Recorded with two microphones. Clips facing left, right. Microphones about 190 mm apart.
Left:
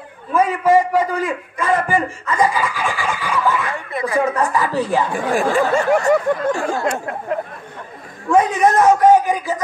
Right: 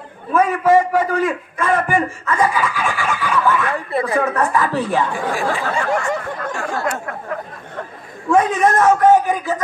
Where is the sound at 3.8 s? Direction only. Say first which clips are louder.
Right 3 dB; 35° right (ahead or behind).